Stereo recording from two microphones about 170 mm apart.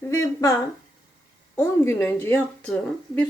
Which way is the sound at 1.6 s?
15° left (ahead or behind).